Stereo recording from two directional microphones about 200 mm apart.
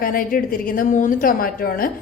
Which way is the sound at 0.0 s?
45° left (ahead or behind).